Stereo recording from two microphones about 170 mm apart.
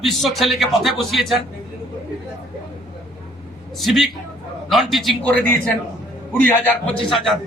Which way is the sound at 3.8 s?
Centre (ahead or behind).